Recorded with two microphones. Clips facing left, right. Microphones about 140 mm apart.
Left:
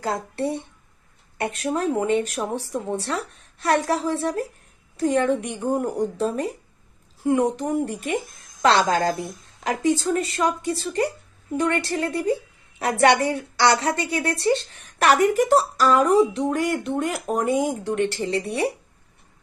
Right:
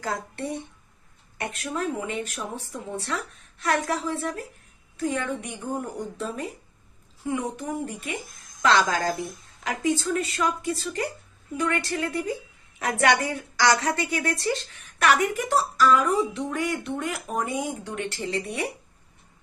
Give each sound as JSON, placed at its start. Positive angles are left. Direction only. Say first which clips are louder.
{"t": 0.0, "sound": "speech", "louder": "left 5 dB", "side_deg": 30}
{"t": 5.0, "sound": "a woman's voice", "louder": "left 7 dB", "side_deg": 40}
{"t": 7.2, "sound": "speech", "louder": "left 8 dB", "side_deg": 60}
{"t": 7.6, "sound": "a woman's voice", "louder": "left 6 dB", "side_deg": 40}